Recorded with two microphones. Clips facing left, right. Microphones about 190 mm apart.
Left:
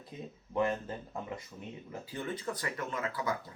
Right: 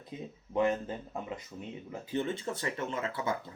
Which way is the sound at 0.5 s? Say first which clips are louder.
Right 3 dB; 20° right (ahead or behind).